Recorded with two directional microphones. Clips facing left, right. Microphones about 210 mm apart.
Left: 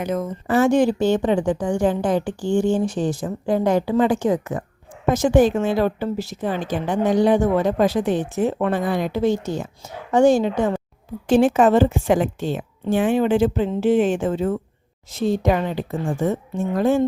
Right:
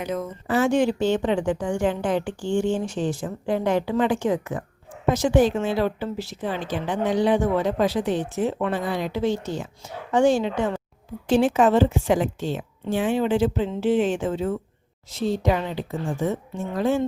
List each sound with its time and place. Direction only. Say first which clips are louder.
0.0 s a woman's voice: left 4 dB; 45° left (ahead or behind)